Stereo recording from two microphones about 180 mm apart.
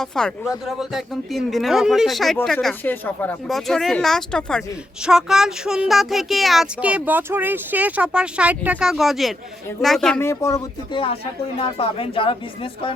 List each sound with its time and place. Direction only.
0.0 s speech: 5° left (ahead or behind)
10.2 s speech: 15° left (ahead or behind)
10.5 s speech: 30° left (ahead or behind)